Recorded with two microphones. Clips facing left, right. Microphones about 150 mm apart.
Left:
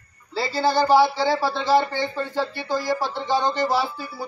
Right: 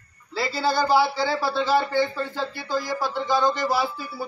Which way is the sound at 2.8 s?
10° right (ahead or behind).